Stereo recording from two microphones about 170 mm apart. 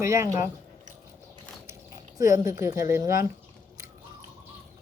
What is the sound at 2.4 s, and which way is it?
Speech, 20° right (ahead or behind).